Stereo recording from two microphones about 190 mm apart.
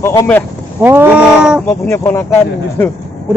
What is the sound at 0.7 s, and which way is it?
Speech, 10° right (ahead or behind).